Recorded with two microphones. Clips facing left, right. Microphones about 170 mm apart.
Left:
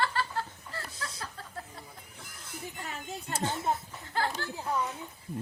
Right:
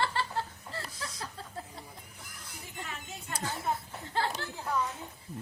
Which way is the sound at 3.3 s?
25° left (ahead or behind).